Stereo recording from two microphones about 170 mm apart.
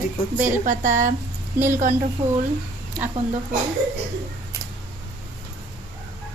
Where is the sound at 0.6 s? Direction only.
50° right (ahead or behind).